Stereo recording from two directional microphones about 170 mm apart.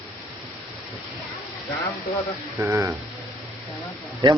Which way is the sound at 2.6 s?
15° right (ahead or behind).